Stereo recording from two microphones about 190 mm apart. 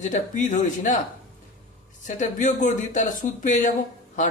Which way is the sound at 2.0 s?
40° left (ahead or behind).